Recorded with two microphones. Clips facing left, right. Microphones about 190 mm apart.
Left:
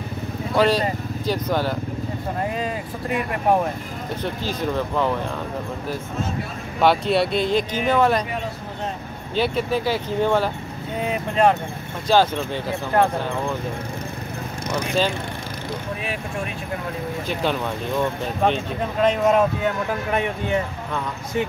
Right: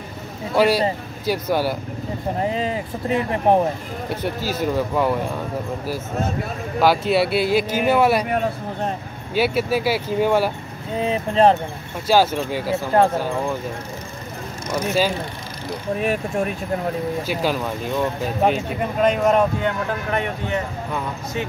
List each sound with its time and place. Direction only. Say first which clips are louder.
0.6 s speech: right 2 dB; 10° right (ahead or behind)
2.4 s speech: right 4 dB; 25° right (ahead or behind)
4.1 s speech: right 2 dB; 10° right (ahead or behind)
6.8 s speech: right 1 dB; centre (ahead or behind)
9.3 s speech: right 2 dB; 10° right (ahead or behind)
11.0 s speech: right 3 dB; 30° right (ahead or behind)
12.1 s speech: right 1 dB; 10° right (ahead or behind)
12.9 s speech: right 2 dB; 25° right (ahead or behind)
17.3 s speech: left 2 dB; 5° right (ahead or behind)